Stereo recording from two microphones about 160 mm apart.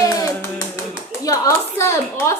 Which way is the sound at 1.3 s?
15° left (ahead or behind).